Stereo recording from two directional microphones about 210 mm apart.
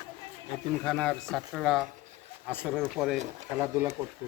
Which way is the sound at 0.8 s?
5° left (ahead or behind).